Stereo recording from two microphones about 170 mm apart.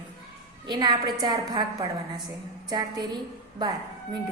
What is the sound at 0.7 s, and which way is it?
A woman's voice, 25° right (ahead or behind).